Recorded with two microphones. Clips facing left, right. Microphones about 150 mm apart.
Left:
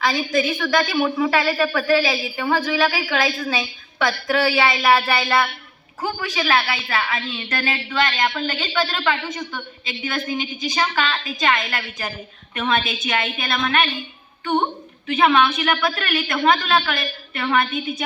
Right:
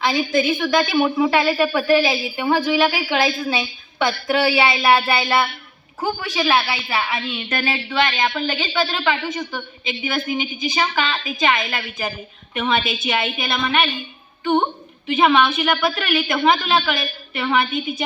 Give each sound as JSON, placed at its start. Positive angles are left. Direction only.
{"t": 0.6, "sound": "speech", "side_deg": -20}
{"t": 15.0, "sound": "speech", "side_deg": -15}
{"t": 16.7, "sound": "speech", "side_deg": -20}